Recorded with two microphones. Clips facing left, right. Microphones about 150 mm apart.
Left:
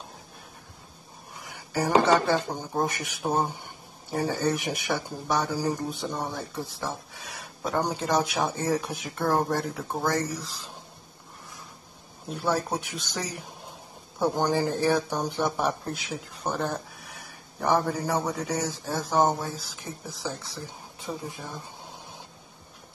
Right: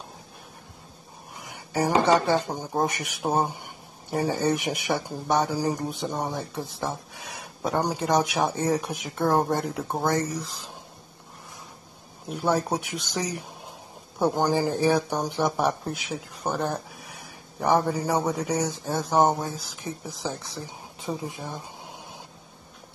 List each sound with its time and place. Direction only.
1.4 s a sound: 20° right (ahead or behind)
2.2 s speech: 15° right (ahead or behind)
12.4 s speech: 15° right (ahead or behind)
18.7 s speech: 15° right (ahead or behind)